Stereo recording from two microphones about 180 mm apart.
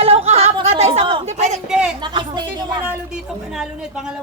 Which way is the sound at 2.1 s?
25° right (ahead or behind).